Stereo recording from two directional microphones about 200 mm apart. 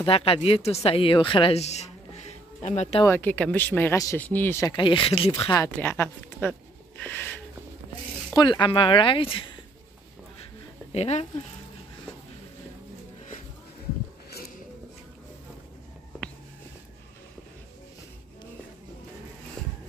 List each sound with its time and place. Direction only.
0.0 s speech: 30° left (ahead or behind)
3.0 s speech: 10° left (ahead or behind)
4.7 s speech: 25° left (ahead or behind); by 6.5 s 10° left (ahead or behind)
7.0 s a sound: 10° left (ahead or behind)
8.3 s speech: 20° left (ahead or behind)
10.9 s speech: 30° left (ahead or behind)
19.6 s music: 5° left (ahead or behind)